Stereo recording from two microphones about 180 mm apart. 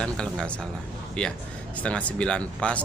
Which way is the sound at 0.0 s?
5° left (ahead or behind).